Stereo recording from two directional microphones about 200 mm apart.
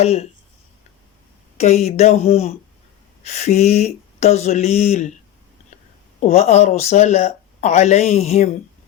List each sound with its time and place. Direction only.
0.0 s speech: 30° left (ahead or behind)
1.5 s speech: 35° left (ahead or behind)
6.1 s speech: 30° left (ahead or behind)